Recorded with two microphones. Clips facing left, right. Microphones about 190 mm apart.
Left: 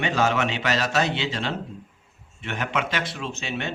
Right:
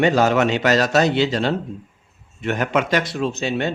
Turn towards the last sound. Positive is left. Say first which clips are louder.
# right 9 dB
turn(degrees=-40)  # may be behind; listen again after turning